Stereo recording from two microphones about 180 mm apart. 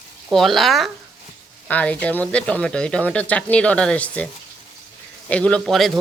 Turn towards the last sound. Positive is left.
turn(degrees=0)  # may be behind; listen again after turning